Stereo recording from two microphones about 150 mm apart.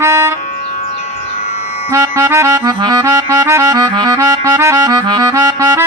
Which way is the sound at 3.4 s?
15° right (ahead or behind).